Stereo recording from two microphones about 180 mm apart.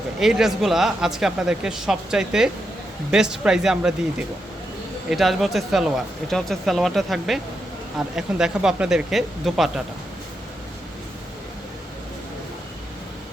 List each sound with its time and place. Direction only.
0.2 s speech: centre (ahead or behind)
5.0 s speech: centre (ahead or behind)